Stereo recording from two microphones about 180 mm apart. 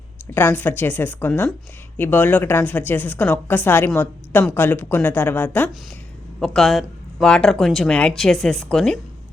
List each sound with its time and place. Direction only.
0.3 s a woman's voice: 10° left (ahead or behind)